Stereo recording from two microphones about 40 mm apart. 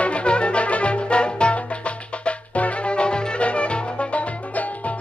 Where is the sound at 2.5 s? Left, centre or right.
Left.